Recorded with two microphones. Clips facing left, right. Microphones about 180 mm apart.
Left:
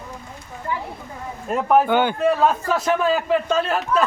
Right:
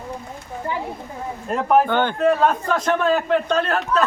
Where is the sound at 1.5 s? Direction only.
Centre (ahead or behind).